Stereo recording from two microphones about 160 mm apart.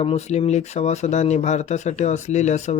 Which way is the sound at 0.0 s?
40° left (ahead or behind).